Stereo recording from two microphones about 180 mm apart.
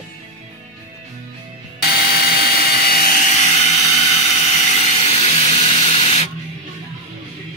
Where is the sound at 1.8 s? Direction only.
55° left (ahead or behind).